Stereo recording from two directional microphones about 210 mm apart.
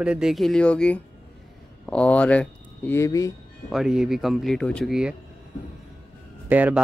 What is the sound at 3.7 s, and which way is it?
Speech, centre (ahead or behind).